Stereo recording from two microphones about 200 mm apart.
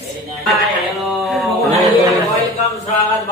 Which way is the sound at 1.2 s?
Centre (ahead or behind).